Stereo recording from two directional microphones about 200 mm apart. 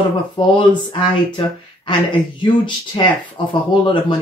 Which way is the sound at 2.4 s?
25° left (ahead or behind).